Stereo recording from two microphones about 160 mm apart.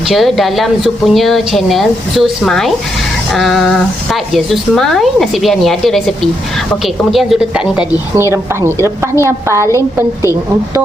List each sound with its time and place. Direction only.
0.1 s speech: centre (ahead or behind)
8.1 s a woman's voice: 15° right (ahead or behind)